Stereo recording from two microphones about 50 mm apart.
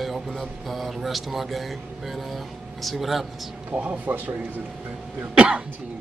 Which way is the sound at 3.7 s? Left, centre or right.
Right.